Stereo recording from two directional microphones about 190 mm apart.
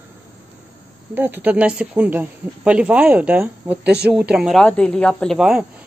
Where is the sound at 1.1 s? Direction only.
10° right (ahead or behind).